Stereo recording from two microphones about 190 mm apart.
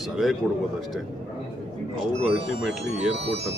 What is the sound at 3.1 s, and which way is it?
Speech, 70° right (ahead or behind).